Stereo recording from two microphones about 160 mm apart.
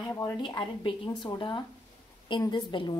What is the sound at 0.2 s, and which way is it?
A woman's voice, 30° left (ahead or behind).